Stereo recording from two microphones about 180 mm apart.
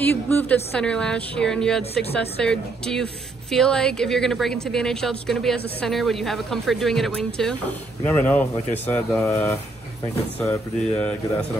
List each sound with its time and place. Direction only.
0.0 s a woman's voice: 10° left (ahead or behind)